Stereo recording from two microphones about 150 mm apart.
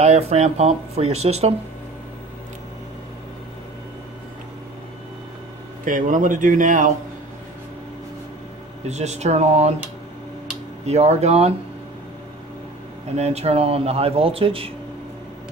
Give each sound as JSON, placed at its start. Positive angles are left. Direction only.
{"t": 0.0, "sound": "speech", "side_deg": -45}
{"t": 5.9, "sound": "speech", "side_deg": -60}
{"t": 8.8, "sound": "speech", "side_deg": -50}
{"t": 10.9, "sound": "speech", "side_deg": -45}
{"t": 13.1, "sound": "speech", "side_deg": -45}